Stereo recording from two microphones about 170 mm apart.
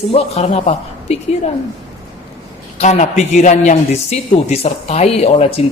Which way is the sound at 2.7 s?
40° left (ahead or behind).